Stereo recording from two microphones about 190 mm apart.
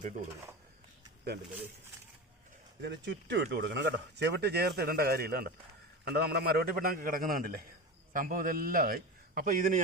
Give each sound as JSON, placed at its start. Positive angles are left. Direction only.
{"t": 2.8, "sound": "a man's voice", "side_deg": -65}